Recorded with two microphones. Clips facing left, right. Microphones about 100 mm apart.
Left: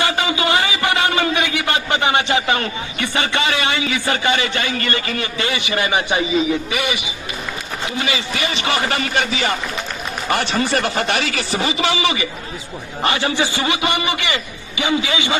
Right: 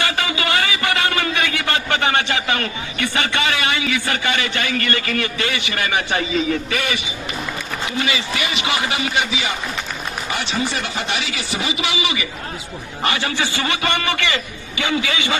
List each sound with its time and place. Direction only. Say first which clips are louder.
0.0 s speech: left 3 dB; 25° left (ahead or behind)
8.0 s a man's voice: left 1 dB; 30° left (ahead or behind); by 11.4 s 50° left (ahead or behind)
11.5 s a man's voice: left 3 dB; 35° left (ahead or behind)
13.0 s a man's voice: left 3 dB; 25° left (ahead or behind)